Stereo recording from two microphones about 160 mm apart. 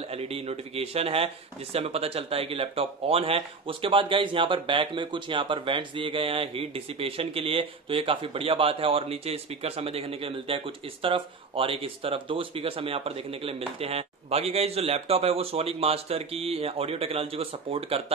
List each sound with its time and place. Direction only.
0.1 s speech: 40° right (ahead or behind)